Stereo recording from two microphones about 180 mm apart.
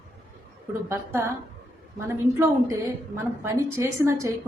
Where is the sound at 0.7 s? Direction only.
15° right (ahead or behind).